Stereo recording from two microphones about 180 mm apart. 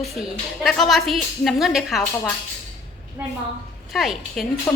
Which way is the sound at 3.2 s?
15° right (ahead or behind).